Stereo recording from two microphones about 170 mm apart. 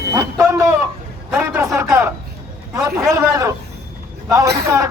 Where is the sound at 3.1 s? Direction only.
20° right (ahead or behind).